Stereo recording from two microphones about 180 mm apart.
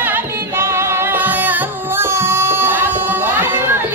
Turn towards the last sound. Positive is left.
turn(degrees=-15)  # may be behind; listen again after turning